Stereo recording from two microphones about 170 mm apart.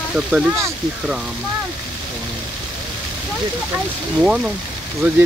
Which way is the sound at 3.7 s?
5° right (ahead or behind).